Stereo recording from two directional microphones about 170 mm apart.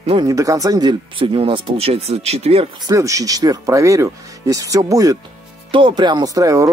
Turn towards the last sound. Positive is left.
turn(degrees=-20)  # may be behind; listen again after turning